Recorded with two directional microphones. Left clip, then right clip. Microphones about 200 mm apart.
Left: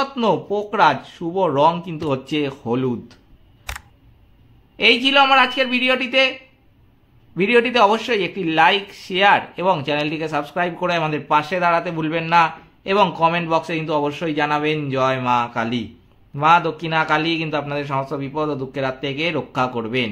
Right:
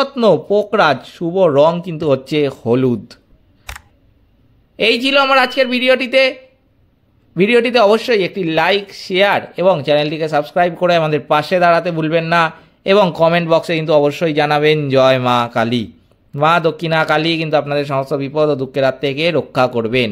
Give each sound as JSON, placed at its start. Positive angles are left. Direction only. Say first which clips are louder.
{"t": 0.0, "sound": "speech", "louder": "right 7 dB", "side_deg": -35}
{"t": 3.7, "sound": "camera", "louder": "even", "side_deg": 0}
{"t": 4.7, "sound": "a man's voice", "louder": "right 1 dB", "side_deg": -30}
{"t": 7.3, "sound": "speech", "louder": "right 4 dB", "side_deg": -30}